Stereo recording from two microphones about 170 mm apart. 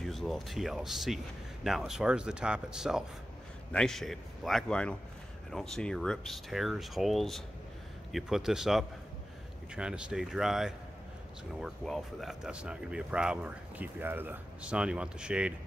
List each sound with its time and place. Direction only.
0.0 s speech: centre (ahead or behind)